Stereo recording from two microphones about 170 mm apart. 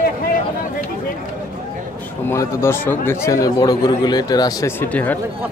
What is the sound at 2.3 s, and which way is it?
A man's voice, 15° left (ahead or behind).